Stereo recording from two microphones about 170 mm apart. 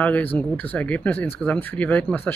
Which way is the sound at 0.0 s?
10° left (ahead or behind).